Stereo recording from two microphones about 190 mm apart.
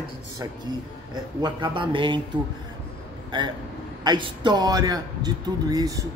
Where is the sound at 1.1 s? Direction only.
25° right (ahead or behind).